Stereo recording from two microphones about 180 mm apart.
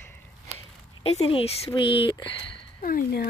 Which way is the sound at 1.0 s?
30° left (ahead or behind).